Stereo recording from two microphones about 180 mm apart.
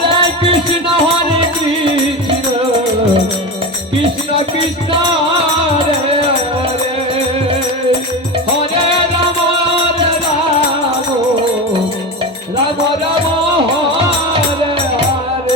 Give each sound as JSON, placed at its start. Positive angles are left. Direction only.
{"t": 0.1, "sound": "music", "side_deg": -30}